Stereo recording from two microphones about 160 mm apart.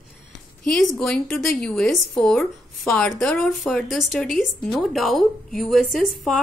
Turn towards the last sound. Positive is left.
turn(degrees=0)  # may be behind; listen again after turning